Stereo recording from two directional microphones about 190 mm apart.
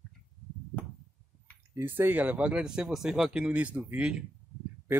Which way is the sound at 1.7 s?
10° right (ahead or behind).